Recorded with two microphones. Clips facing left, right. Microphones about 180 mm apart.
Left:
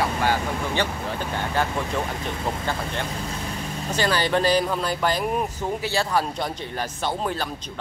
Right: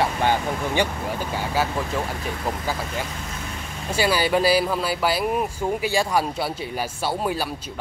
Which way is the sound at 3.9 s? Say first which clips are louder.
Right 2 dB; 10° right (ahead or behind).